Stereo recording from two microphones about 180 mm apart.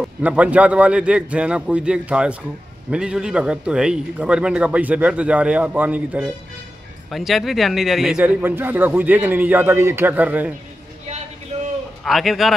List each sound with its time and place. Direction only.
0.0 s a man's voice: 5° right (ahead or behind)
11.1 s a sound: 40° right (ahead or behind)
12.0 s a man's voice: centre (ahead or behind)